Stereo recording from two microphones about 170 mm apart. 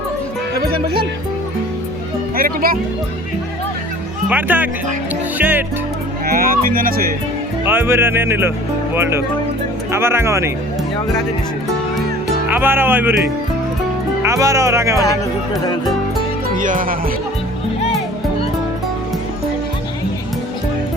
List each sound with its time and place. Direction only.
2.3 s music: 60° right (ahead or behind)
4.3 s speech: 10° right (ahead or behind)
6.2 s speech: 60° right (ahead or behind)
7.6 s speech: 15° right (ahead or behind)
9.9 s speech: 15° right (ahead or behind)
12.5 s speech: 10° right (ahead or behind)
14.2 s speech: 20° right (ahead or behind)
16.6 s music: 50° right (ahead or behind)